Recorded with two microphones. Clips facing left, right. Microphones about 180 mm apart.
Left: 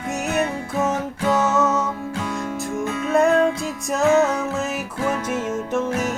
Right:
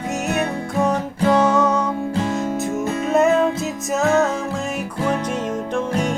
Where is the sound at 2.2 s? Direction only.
40° right (ahead or behind).